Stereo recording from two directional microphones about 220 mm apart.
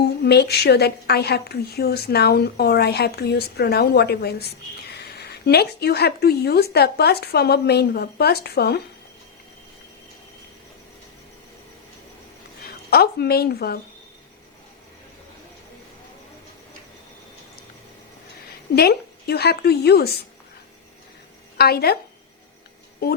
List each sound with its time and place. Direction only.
0.0 s a woman's voice: 50° left (ahead or behind)
12.9 s a woman's voice: 45° left (ahead or behind)
18.7 s a woman's voice: 45° left (ahead or behind)
21.6 s a woman's voice: 45° left (ahead or behind)
23.0 s a woman's voice: 45° left (ahead or behind)